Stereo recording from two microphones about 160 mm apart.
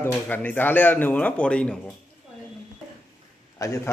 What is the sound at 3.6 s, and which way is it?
Speech, 20° left (ahead or behind).